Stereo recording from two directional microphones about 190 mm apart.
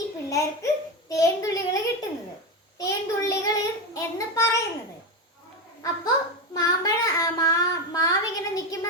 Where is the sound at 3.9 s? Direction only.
15° left (ahead or behind).